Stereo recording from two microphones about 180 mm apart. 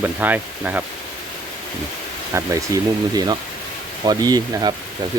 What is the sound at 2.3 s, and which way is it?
Speech, 15° right (ahead or behind).